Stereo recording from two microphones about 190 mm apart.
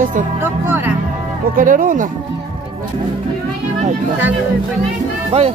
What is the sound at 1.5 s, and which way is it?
Speech, 45° right (ahead or behind).